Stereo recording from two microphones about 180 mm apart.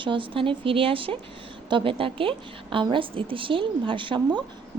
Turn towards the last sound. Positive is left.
turn(degrees=-25)  # may be behind; listen again after turning